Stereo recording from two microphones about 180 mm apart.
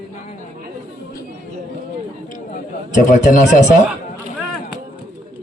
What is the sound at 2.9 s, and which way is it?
Speech, 45° left (ahead or behind).